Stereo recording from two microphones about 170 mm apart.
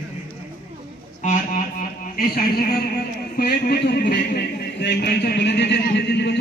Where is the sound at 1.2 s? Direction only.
50° left (ahead or behind).